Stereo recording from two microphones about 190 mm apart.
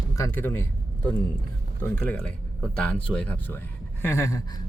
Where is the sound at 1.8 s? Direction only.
5° left (ahead or behind).